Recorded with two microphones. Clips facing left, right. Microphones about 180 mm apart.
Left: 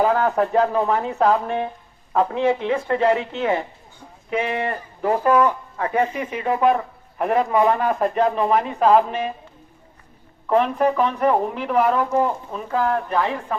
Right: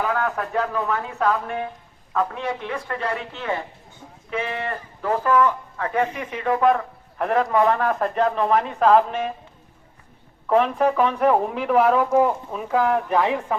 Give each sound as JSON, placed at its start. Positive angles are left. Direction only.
{"t": 0.0, "sound": "speech", "side_deg": 30}
{"t": 10.5, "sound": "speech", "side_deg": 0}